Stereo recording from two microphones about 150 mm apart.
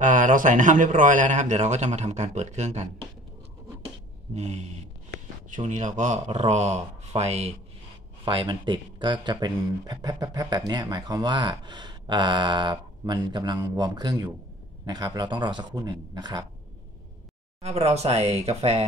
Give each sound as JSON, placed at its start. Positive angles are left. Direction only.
{"t": 0.0, "sound": "a man's voice", "side_deg": -60}
{"t": 4.4, "sound": "a man's voice", "side_deg": -50}
{"t": 8.3, "sound": "speech", "side_deg": -35}
{"t": 17.6, "sound": "a man's voice", "side_deg": -45}